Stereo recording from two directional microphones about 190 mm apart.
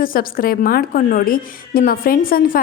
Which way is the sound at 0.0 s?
50° left (ahead or behind).